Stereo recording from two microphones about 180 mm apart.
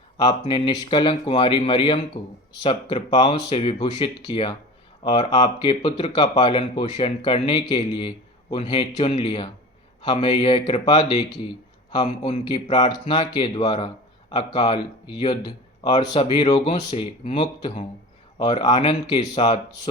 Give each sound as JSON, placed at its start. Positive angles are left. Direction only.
{"t": 0.2, "sound": "speech", "side_deg": 25}
{"t": 9.0, "sound": "speech", "side_deg": 35}
{"t": 12.8, "sound": "speech", "side_deg": 25}